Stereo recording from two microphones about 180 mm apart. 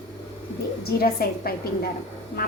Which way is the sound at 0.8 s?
60° left (ahead or behind).